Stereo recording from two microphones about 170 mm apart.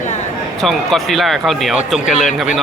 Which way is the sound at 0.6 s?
Centre (ahead or behind).